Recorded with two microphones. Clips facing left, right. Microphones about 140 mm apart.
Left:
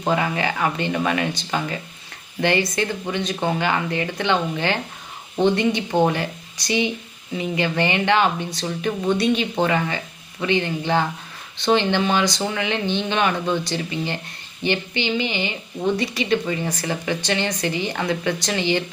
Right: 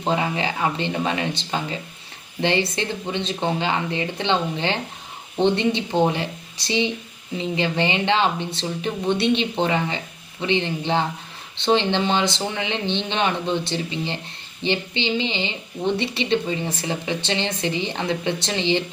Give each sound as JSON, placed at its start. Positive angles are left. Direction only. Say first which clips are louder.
{"t": 0.0, "sound": "a woman's voice", "louder": "left 1 dB", "side_deg": -25}